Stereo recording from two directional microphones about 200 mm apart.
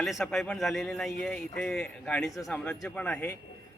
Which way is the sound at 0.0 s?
Centre (ahead or behind).